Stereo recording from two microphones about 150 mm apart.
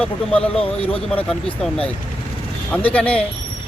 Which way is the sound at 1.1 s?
5° left (ahead or behind).